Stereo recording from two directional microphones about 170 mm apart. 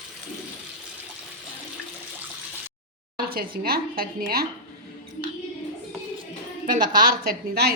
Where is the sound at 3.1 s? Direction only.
60° right (ahead or behind).